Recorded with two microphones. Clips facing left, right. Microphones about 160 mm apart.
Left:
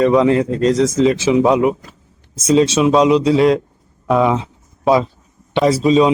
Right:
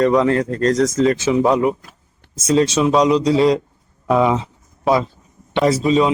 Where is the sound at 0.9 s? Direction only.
20° left (ahead or behind).